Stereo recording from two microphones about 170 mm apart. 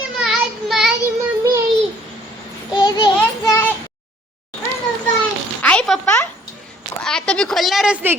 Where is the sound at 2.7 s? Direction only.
25° left (ahead or behind).